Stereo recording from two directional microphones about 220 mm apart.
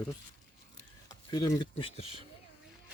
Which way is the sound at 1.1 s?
15° left (ahead or behind).